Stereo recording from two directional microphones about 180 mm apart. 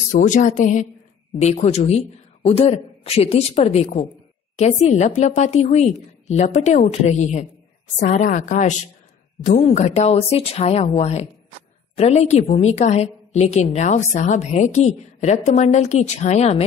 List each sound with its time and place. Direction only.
0.1 s a woman's voice: 45° left (ahead or behind)